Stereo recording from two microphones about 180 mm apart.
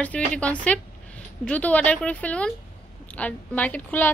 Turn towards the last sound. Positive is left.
turn(degrees=10)  # may be behind; listen again after turning